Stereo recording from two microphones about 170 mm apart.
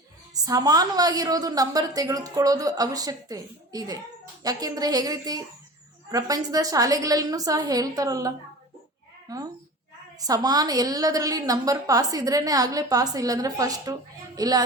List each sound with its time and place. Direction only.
0.4 s a woman's voice: 20° right (ahead or behind)
9.3 s a woman's voice: 20° right (ahead or behind)